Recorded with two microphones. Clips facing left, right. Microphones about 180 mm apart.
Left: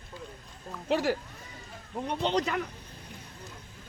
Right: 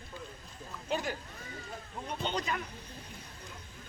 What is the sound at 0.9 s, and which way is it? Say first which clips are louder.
Speech: left 7 dB; 75° left (ahead or behind).